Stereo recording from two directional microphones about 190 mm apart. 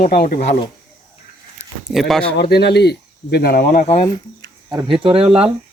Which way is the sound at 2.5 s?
60° left (ahead or behind).